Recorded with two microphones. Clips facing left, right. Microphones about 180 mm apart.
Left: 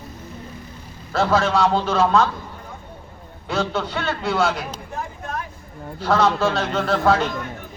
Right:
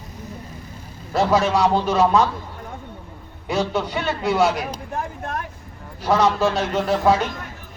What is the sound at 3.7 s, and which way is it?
Speech, 15° right (ahead or behind).